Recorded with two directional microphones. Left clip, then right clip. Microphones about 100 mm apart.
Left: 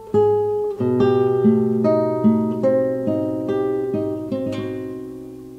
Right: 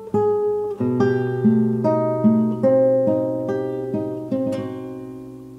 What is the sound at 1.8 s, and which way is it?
Music, 20° left (ahead or behind).